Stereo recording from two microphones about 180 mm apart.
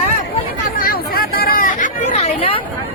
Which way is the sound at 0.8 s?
55° left (ahead or behind).